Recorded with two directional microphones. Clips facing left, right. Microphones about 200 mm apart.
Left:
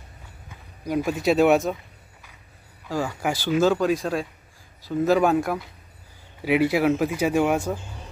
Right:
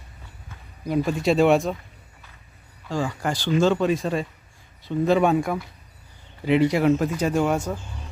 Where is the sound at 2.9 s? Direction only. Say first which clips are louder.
Even; 10° left (ahead or behind).